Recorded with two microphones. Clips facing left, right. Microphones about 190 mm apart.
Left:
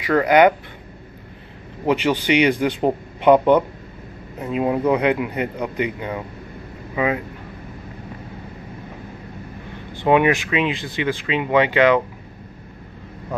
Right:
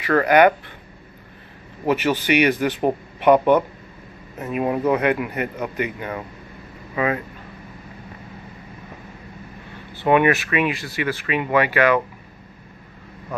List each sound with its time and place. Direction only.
0.0 s speech: 15° left (ahead or behind)
1.9 s speech: 15° left (ahead or behind)
4.5 s speech: 20° left (ahead or behind)
10.0 s speech: 15° left (ahead or behind)